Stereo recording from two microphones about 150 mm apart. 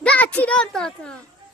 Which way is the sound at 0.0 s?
10° left (ahead or behind).